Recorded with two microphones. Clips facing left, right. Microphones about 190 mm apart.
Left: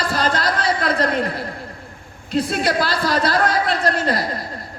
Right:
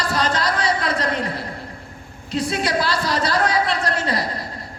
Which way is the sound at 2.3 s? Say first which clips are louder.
Left 2 dB; 55° left (ahead or behind).